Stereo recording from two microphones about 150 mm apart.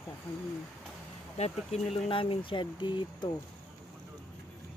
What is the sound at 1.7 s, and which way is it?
Speech, 45° left (ahead or behind).